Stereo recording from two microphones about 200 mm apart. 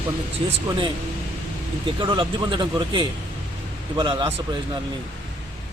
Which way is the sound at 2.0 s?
25° right (ahead or behind).